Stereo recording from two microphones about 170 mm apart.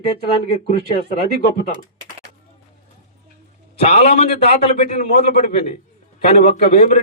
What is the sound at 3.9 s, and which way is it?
A man's voice, 35° left (ahead or behind).